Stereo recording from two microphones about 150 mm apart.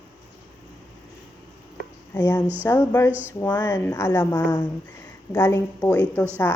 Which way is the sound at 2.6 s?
15° left (ahead or behind).